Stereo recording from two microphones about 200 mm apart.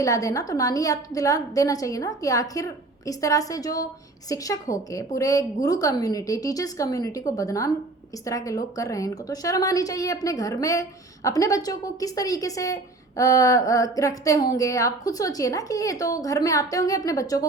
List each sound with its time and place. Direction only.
0.0 s a woman's voice: 15° left (ahead or behind)